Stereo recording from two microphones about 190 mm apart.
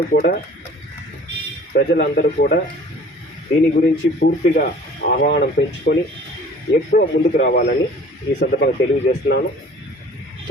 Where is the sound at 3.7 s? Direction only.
50° left (ahead or behind).